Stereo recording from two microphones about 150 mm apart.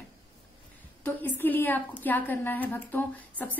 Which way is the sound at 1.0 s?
10° left (ahead or behind).